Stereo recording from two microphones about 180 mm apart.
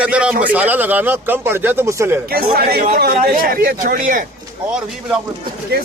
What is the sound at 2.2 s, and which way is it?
Speech, 60° right (ahead or behind).